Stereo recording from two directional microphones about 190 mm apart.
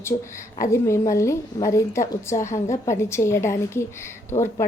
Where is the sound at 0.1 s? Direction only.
30° left (ahead or behind).